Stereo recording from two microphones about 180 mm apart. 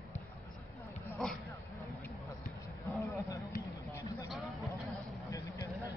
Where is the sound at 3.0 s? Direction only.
15° left (ahead or behind).